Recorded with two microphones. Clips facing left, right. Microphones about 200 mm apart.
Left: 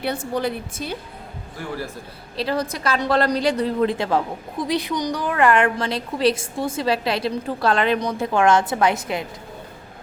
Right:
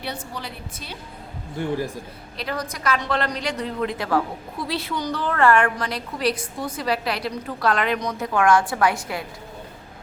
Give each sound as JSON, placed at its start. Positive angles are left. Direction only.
{"t": 0.0, "sound": "a woman's voice", "side_deg": 50}
{"t": 1.5, "sound": "a man's voice", "side_deg": -20}
{"t": 2.3, "sound": "a woman's voice", "side_deg": 30}